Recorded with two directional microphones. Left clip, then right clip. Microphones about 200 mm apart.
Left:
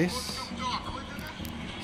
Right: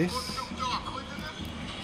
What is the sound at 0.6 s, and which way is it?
Music, 25° right (ahead or behind).